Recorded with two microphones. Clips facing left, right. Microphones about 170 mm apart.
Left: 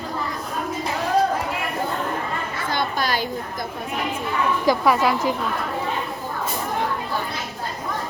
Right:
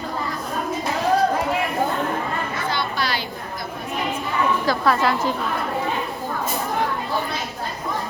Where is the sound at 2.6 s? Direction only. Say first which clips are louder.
Left 3 dB; 45° left (ahead or behind).